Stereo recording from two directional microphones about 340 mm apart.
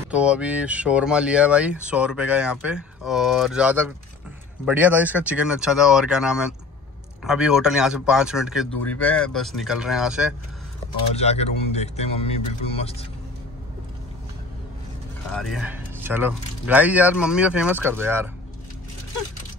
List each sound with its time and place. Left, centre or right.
0.1 s speech: centre
11.1 s speech: centre
15.3 s speech: centre